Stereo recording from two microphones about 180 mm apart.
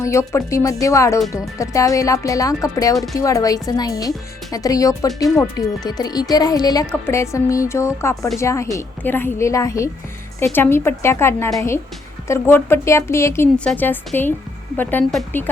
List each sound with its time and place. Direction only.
0.0 s a woman's voice: 15° left (ahead or behind)